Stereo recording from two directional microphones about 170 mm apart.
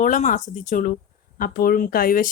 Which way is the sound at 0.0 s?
45° left (ahead or behind).